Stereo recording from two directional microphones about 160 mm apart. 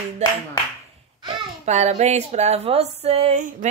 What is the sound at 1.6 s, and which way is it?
A woman's voice, 45° right (ahead or behind).